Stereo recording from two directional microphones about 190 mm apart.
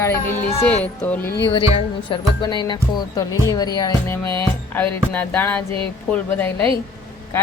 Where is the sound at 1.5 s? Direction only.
30° left (ahead or behind); by 6.7 s 10° left (ahead or behind).